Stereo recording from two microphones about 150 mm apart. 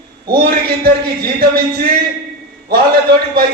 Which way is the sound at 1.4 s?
90° right.